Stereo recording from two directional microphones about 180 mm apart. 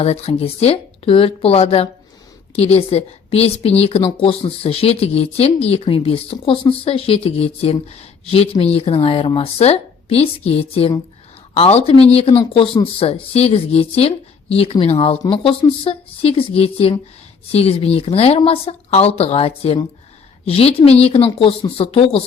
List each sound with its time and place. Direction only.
0.0 s a woman's voice: 35° left (ahead or behind)